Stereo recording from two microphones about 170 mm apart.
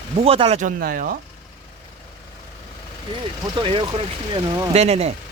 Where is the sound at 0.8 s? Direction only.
55° right (ahead or behind).